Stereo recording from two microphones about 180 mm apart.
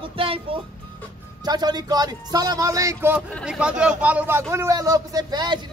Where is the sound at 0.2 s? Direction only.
30° right (ahead or behind).